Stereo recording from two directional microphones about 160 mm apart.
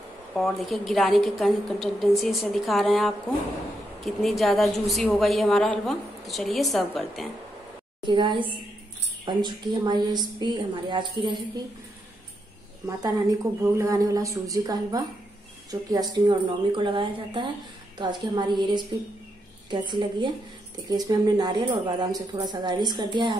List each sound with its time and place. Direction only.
0.3 s a woman's voice: centre (ahead or behind)
8.0 s speech: 30° right (ahead or behind)
12.8 s speech: 20° right (ahead or behind)